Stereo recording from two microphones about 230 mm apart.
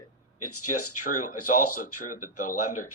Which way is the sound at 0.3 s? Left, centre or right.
Left.